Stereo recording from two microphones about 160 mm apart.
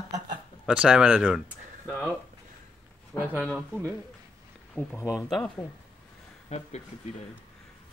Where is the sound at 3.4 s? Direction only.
5° left (ahead or behind).